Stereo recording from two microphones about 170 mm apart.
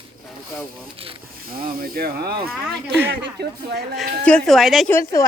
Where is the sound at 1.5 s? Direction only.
60° right (ahead or behind); by 3.5 s 75° right (ahead or behind).